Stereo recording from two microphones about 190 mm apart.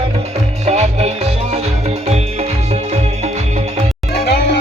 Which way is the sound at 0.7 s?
35° right (ahead or behind).